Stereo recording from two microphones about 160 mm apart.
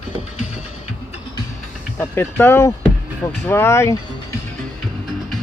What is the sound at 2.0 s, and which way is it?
Speech, 15° left (ahead or behind).